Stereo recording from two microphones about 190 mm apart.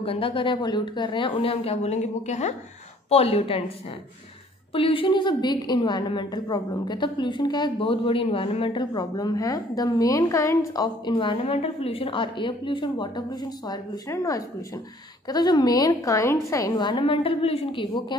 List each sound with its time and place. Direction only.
0.0 s a woman's voice: 30° left (ahead or behind)
4.7 s a woman's voice: 30° left (ahead or behind)